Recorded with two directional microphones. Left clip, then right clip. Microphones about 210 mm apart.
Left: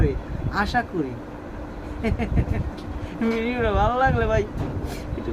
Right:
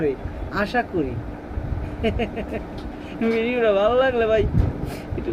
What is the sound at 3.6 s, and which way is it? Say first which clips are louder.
Speech: right 3 dB; 20° left (ahead or behind).